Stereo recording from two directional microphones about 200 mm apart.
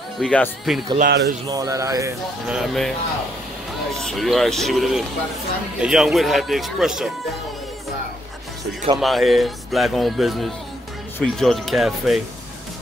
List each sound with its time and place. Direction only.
0.2 s speech: 5° left (ahead or behind)
0.9 s speech: 50° right (ahead or behind)
1.5 s speech: 15° right (ahead or behind)
2.4 s speech: centre (ahead or behind)
4.0 s speech: centre (ahead or behind)
9.0 s speech: centre (ahead or behind)